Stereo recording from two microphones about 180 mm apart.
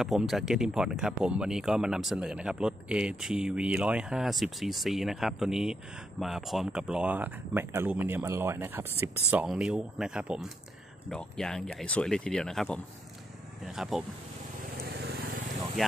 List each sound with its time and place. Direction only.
0.0 s speech: centre (ahead or behind)
14.8 s vehicle: 65° right (ahead or behind)